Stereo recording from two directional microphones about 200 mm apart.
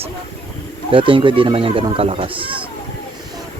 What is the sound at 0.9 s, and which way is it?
Speech, 25° right (ahead or behind).